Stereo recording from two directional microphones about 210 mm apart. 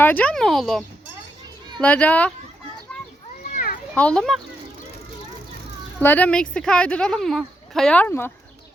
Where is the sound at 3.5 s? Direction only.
40° left (ahead or behind).